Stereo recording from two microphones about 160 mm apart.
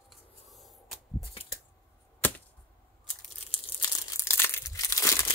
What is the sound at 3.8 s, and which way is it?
Crumpling, 20° left (ahead or behind).